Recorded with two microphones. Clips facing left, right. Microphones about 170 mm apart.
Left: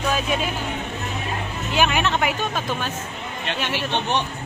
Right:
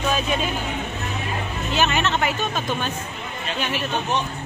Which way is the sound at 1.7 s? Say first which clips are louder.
Left 1 dB; 10° left (ahead or behind).